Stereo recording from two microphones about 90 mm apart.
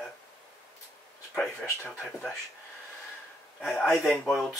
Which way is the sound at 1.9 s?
10° left (ahead or behind).